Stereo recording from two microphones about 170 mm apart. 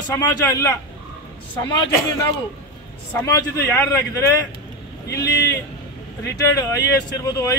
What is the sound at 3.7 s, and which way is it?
Speech, 15° left (ahead or behind).